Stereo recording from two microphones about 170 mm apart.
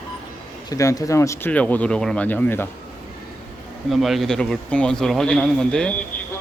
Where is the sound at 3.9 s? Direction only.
Centre (ahead or behind).